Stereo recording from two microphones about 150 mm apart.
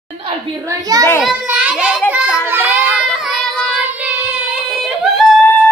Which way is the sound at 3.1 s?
Centre (ahead or behind).